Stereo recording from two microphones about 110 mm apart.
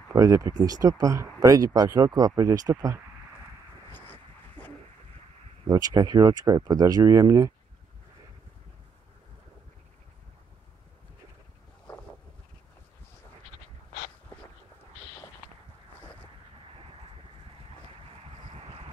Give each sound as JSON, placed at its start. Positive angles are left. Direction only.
{"t": 0.1, "sound": "speech", "side_deg": -30}
{"t": 3.9, "sound": "a sound", "side_deg": 15}
{"t": 5.7, "sound": "speech", "side_deg": -35}